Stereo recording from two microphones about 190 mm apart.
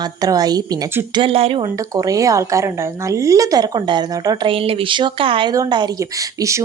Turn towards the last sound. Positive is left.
turn(degrees=-15)  # may be behind; listen again after turning